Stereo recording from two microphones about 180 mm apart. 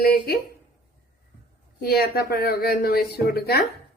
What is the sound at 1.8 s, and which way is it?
A woman's voice, 60° left (ahead or behind).